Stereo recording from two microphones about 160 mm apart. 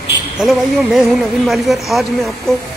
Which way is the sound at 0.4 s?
Centre (ahead or behind).